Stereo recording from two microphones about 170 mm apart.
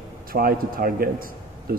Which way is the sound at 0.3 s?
60° right (ahead or behind).